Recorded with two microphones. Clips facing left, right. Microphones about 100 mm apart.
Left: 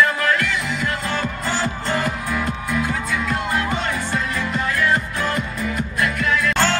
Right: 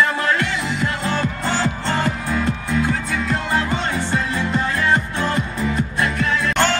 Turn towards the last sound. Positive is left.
turn(degrees=-25)  # may be behind; listen again after turning